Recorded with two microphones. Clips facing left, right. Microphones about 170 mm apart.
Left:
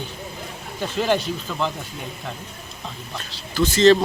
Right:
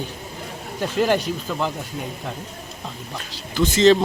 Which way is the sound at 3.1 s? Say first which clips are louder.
Even; 20° right (ahead or behind).